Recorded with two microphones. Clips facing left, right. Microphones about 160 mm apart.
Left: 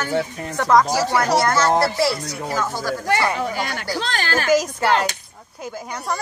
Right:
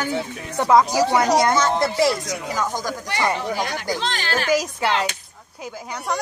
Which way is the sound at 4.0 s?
45° left (ahead or behind).